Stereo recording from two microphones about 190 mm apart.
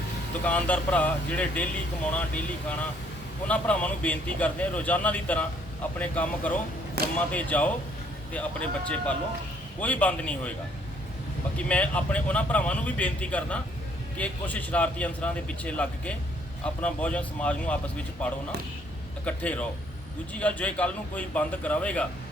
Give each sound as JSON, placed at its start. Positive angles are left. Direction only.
{"t": 0.4, "sound": "a man's voice", "side_deg": 10}
{"t": 7.0, "sound": "speech", "side_deg": -55}
{"t": 7.3, "sound": "a man's voice", "side_deg": 5}
{"t": 11.5, "sound": "a man's voice", "side_deg": 5}